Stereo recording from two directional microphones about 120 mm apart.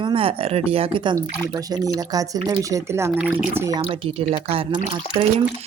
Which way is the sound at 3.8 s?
55° right (ahead or behind).